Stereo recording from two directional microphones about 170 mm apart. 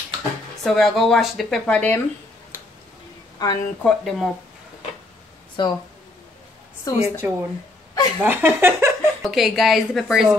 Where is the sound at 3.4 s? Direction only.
20° left (ahead or behind).